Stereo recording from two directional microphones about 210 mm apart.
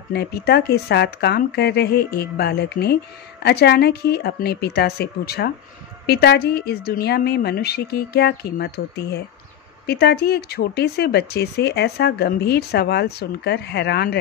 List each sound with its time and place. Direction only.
0.1 s speech: 50° left (ahead or behind)